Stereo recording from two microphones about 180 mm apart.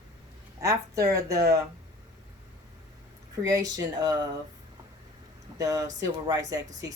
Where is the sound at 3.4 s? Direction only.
20° right (ahead or behind).